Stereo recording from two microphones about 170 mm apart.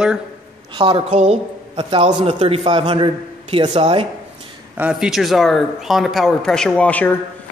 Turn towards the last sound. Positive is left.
turn(degrees=10)  # may be behind; listen again after turning